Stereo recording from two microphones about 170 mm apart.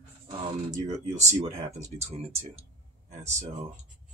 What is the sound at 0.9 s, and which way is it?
Speech, 45° right (ahead or behind).